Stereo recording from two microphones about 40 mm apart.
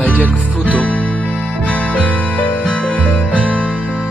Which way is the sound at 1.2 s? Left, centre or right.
Left.